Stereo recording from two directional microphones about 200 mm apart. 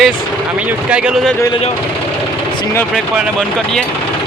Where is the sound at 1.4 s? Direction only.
25° left (ahead or behind); by 3.8 s centre (ahead or behind).